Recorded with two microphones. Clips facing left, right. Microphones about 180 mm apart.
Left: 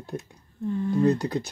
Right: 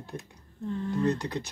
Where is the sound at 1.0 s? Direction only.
35° left (ahead or behind).